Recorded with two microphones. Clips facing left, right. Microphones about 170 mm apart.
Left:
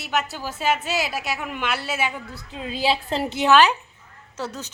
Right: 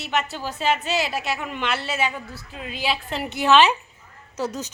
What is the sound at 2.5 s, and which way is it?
Speech, 30° left (ahead or behind).